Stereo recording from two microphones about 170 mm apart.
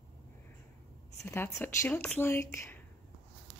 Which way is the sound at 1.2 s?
15° left (ahead or behind).